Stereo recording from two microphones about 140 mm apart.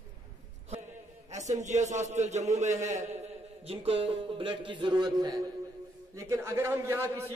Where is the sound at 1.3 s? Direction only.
55° right (ahead or behind).